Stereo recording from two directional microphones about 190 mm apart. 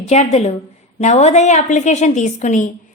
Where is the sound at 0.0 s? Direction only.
35° left (ahead or behind).